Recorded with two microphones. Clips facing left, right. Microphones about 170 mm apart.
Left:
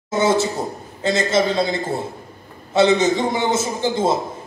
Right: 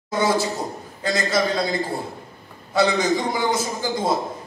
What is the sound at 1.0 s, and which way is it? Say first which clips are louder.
A man's voice: left 4 dB; 25° left (ahead or behind).